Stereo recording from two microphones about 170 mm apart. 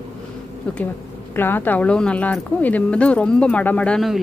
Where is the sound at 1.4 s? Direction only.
10° left (ahead or behind).